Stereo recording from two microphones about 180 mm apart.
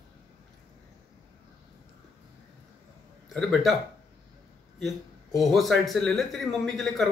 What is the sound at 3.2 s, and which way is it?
Speech, centre (ahead or behind).